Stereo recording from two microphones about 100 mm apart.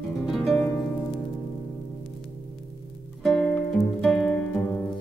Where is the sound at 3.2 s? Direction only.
10° left (ahead or behind).